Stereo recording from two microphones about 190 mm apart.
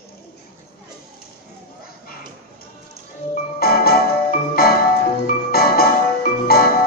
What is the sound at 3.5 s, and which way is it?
Music, 50° left (ahead or behind).